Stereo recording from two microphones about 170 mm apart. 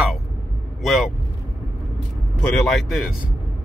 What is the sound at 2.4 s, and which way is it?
Speech, 5° left (ahead or behind).